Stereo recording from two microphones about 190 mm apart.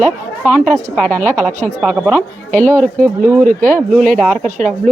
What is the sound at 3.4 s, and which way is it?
Speech, 45° right (ahead or behind).